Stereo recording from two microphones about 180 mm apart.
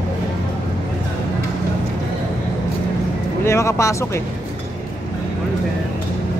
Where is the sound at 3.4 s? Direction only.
15° left (ahead or behind).